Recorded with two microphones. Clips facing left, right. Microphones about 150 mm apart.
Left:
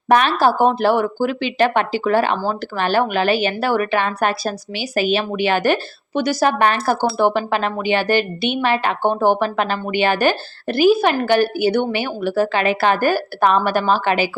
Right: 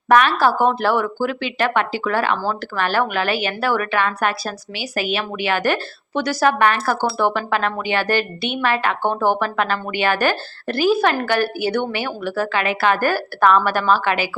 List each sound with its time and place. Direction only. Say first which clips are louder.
0.1 s a woman's voice: even; 25° left (ahead or behind)